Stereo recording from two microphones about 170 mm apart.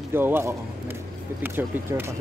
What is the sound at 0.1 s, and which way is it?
Speech, 15° right (ahead or behind).